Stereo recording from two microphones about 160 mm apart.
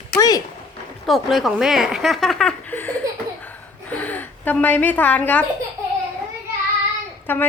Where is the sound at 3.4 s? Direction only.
10° left (ahead or behind).